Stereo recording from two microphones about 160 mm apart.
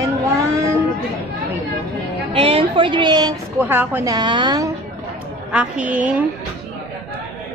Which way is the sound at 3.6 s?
10° right (ahead or behind).